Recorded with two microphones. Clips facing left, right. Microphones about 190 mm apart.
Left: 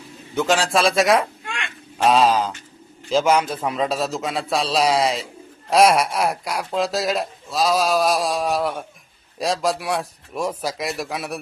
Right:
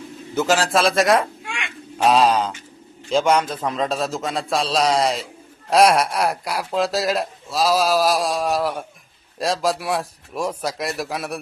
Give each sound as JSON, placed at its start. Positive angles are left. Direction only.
{"t": 0.3, "sound": "speech", "side_deg": -5}
{"t": 1.5, "sound": "a sound", "side_deg": -10}
{"t": 2.0, "sound": "speech", "side_deg": 0}